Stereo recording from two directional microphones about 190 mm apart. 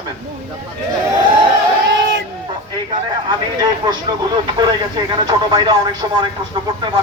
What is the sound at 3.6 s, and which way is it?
Speech, 20° right (ahead or behind).